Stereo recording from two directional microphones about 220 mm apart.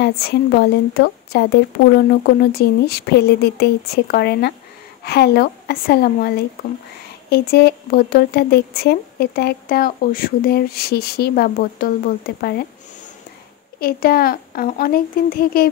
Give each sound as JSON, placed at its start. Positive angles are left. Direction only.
{"t": 0.0, "sound": "speech", "side_deg": 45}
{"t": 13.7, "sound": "speech", "side_deg": 45}